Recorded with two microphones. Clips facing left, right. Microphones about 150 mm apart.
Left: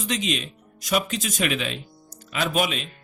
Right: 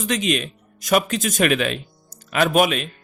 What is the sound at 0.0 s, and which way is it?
Speech, 55° right (ahead or behind).